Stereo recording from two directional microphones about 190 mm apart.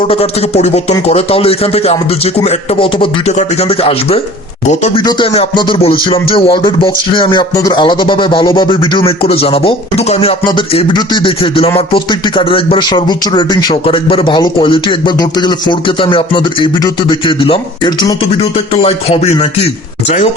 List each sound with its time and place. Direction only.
0.0 s speech: 30° left (ahead or behind)
5.0 s speech: 25° left (ahead or behind)